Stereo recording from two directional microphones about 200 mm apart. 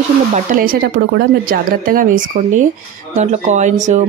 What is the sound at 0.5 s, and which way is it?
Speech, 50° right (ahead or behind).